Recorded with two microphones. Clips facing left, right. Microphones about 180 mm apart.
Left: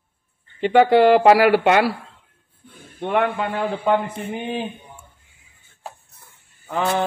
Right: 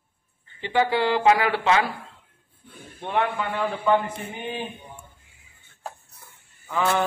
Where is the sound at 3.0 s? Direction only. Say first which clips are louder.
Left 4 dB; 65° left (ahead or behind).